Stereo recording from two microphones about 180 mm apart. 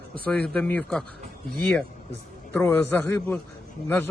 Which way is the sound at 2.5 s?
10° left (ahead or behind).